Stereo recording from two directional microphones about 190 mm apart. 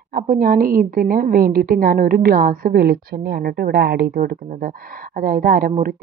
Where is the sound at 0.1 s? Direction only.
50° right (ahead or behind).